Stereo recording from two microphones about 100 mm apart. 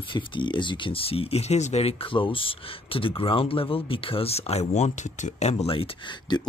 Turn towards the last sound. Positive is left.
turn(degrees=55)  # may be behind; listen again after turning